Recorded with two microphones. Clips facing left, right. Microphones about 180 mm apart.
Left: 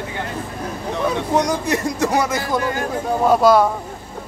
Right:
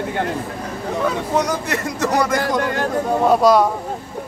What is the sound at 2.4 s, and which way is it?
Speech, 70° right (ahead or behind).